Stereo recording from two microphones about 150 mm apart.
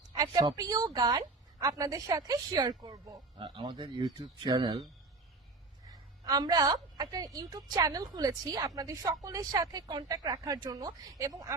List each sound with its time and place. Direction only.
0.2 s a woman's voice: 25° right (ahead or behind)
5.9 s a woman's voice: 25° right (ahead or behind)